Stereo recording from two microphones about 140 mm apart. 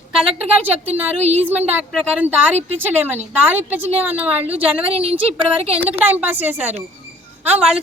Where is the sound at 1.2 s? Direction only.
50° right (ahead or behind).